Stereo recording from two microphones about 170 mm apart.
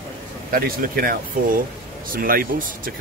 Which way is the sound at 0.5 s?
55° right (ahead or behind).